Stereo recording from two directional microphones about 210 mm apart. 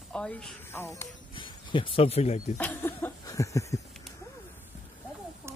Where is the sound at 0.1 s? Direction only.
5° left (ahead or behind).